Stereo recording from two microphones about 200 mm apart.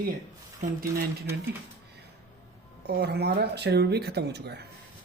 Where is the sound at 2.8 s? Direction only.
55° right (ahead or behind).